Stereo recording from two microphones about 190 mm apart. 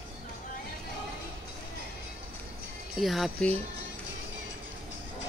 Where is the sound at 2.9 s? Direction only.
Centre (ahead or behind).